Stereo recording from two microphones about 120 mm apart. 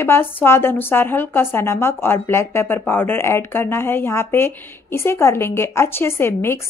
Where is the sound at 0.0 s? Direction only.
20° left (ahead or behind).